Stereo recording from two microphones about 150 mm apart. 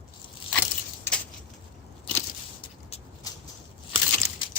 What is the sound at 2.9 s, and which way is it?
Dog, 40° left (ahead or behind).